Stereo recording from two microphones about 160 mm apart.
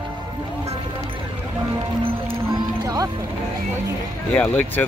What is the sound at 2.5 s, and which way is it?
Music, 20° right (ahead or behind).